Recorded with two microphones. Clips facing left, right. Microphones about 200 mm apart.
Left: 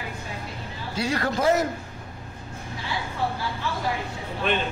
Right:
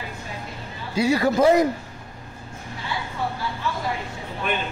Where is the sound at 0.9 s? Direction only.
10° right (ahead or behind).